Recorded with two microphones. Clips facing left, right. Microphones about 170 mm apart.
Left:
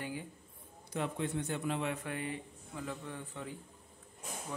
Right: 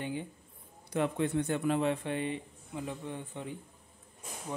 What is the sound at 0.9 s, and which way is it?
Speech, 65° right (ahead or behind).